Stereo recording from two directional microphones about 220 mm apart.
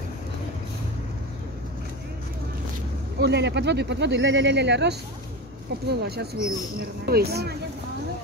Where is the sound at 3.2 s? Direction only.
50° right (ahead or behind).